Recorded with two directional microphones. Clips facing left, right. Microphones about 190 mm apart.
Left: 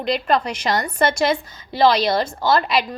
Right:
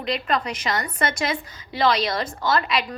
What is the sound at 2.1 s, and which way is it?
Speech, 30° left (ahead or behind).